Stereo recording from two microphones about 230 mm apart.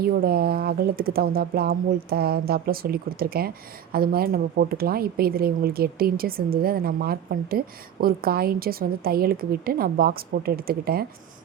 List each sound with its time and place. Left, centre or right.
0.0 s speech: right